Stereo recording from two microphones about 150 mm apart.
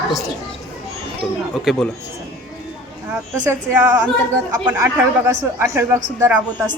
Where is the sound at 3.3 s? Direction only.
20° right (ahead or behind).